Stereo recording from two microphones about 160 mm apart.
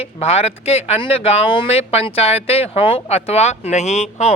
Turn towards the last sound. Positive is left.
turn(degrees=45)  # may be behind; listen again after turning